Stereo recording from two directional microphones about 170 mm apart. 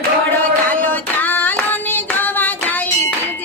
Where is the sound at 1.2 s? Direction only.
10° left (ahead or behind).